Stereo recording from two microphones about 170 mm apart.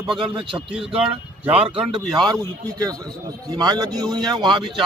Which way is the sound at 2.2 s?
20° right (ahead or behind).